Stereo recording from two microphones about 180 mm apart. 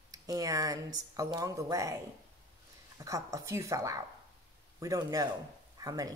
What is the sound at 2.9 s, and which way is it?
Speech, 20° right (ahead or behind).